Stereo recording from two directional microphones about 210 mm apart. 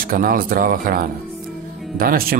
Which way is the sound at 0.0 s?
40° right (ahead or behind).